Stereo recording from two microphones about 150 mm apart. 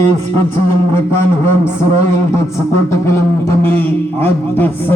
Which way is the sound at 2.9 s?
20° left (ahead or behind).